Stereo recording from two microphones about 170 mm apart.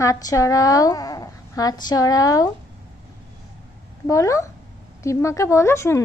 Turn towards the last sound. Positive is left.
turn(degrees=15)  # may be behind; listen again after turning